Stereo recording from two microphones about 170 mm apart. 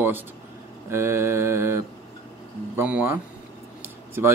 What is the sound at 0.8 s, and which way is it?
Speech, 15° right (ahead or behind).